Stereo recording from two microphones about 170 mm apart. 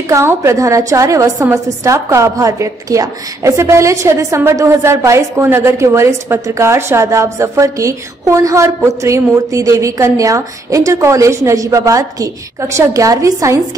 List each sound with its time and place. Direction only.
0.1 s a woman's voice: 15° right (ahead or behind)